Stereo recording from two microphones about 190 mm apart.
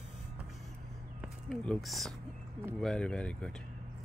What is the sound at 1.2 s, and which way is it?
Speech, centre (ahead or behind).